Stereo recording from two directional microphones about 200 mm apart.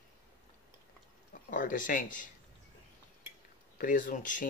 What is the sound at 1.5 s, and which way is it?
Speech, 40° left (ahead or behind).